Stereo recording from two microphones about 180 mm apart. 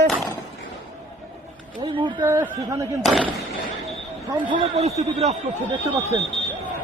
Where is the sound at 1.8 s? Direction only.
25° right (ahead or behind).